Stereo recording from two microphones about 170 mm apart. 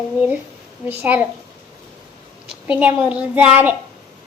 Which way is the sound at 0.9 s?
10° right (ahead or behind).